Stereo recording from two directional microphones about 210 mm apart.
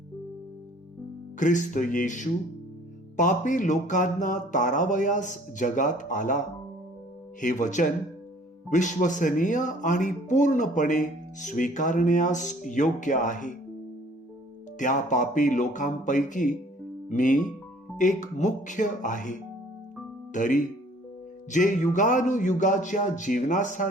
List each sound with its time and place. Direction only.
1.4 s speech: 35° left (ahead or behind)
7.4 s speech: 35° left (ahead or behind)
14.8 s speech: 35° left (ahead or behind)